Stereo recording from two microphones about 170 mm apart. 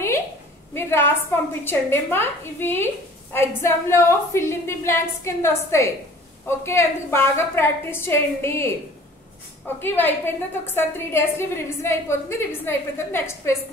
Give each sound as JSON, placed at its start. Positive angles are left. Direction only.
{"t": 0.7, "sound": "a woman's voice", "side_deg": 15}
{"t": 9.8, "sound": "a woman's voice", "side_deg": 10}